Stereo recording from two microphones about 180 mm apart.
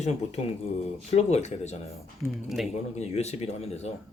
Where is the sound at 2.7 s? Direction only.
40° left (ahead or behind).